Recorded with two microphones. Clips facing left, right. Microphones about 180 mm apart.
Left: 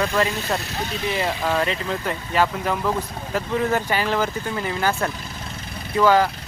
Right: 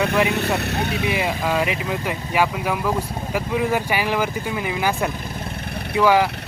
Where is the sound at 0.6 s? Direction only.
65° right (ahead or behind).